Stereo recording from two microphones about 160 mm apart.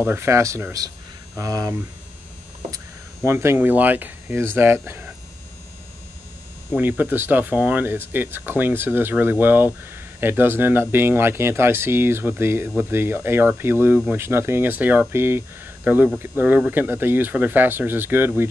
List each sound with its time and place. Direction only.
0.0 s speech: 15° right (ahead or behind)
3.3 s speech: 15° right (ahead or behind)
6.7 s speech: 10° right (ahead or behind)